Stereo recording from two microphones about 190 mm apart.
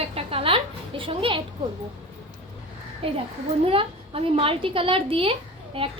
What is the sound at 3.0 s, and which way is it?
A woman's voice, 30° right (ahead or behind).